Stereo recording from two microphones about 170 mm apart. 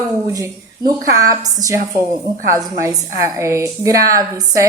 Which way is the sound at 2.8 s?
15° right (ahead or behind).